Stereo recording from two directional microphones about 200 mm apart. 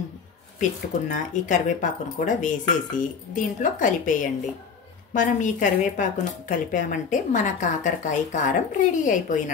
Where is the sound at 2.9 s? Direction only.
40° left (ahead or behind).